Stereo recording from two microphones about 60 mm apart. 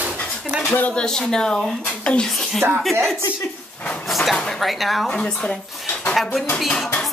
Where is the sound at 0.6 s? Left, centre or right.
Left.